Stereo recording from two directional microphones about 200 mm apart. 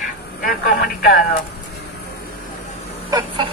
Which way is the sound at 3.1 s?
25° right (ahead or behind).